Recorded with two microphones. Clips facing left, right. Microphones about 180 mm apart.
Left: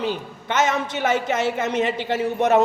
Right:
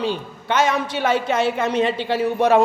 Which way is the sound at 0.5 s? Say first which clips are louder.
Right 2 dB; 25° left (ahead or behind).